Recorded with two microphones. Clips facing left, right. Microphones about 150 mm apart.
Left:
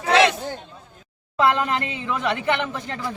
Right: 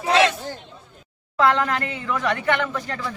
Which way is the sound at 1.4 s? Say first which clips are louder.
Even; 20° left (ahead or behind).